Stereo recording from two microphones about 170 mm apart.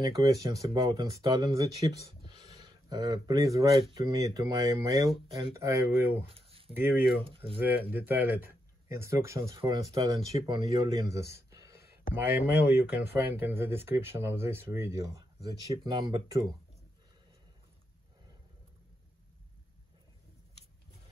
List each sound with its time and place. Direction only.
0.0 s speech: 20° right (ahead or behind)
6.2 s a sound: 35° right (ahead or behind)
6.7 s speech: 10° right (ahead or behind)
7.2 s speech: 30° right (ahead or behind)
7.9 s speech: 10° right (ahead or behind)